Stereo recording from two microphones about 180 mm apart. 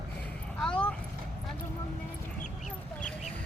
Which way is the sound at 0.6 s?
5° left (ahead or behind).